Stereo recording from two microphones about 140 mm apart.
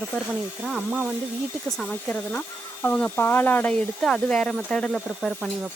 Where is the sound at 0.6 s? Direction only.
5° right (ahead or behind).